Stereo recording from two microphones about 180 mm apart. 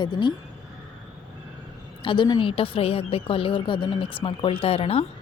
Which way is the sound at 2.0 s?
25° left (ahead or behind).